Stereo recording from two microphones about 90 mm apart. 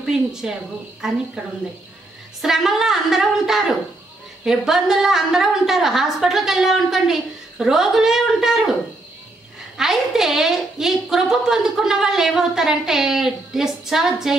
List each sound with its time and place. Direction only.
0.0 s a woman's voice: 5° right (ahead or behind)
2.4 s a woman's voice: 5° right (ahead or behind)
9.8 s a woman's voice: 5° right (ahead or behind)